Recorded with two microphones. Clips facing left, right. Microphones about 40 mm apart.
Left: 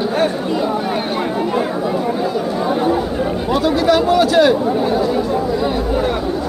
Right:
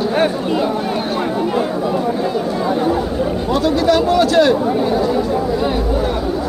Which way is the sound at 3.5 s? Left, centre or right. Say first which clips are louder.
Even; centre.